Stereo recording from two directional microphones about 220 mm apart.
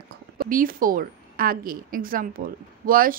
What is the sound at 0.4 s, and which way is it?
A woman's voice, 40° right (ahead or behind).